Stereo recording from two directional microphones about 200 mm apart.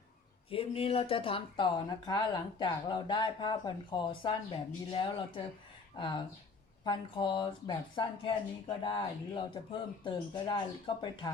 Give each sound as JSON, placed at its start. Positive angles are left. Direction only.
{"t": 0.5, "sound": "speech", "side_deg": 30}